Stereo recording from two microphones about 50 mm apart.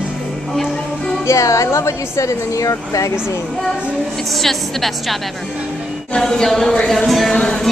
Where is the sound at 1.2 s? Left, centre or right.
Left.